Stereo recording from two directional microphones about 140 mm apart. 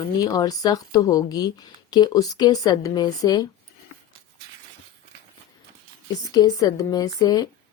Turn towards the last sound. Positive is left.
turn(degrees=30)  # may be behind; listen again after turning